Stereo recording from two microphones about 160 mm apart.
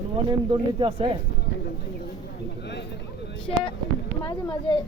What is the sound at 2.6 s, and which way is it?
Speech, 90° left.